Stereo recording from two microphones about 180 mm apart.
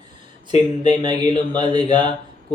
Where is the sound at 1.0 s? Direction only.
25° right (ahead or behind).